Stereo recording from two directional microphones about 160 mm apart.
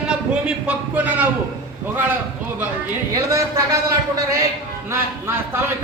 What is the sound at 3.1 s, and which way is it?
A man's voice, 20° right (ahead or behind).